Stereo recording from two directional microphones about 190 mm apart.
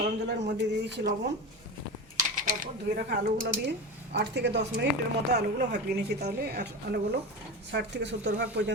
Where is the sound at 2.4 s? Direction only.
45° right (ahead or behind).